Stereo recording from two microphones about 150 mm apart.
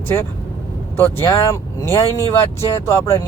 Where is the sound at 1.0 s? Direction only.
20° left (ahead or behind).